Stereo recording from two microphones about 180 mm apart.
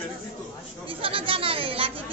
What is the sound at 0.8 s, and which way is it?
Speech, 30° right (ahead or behind).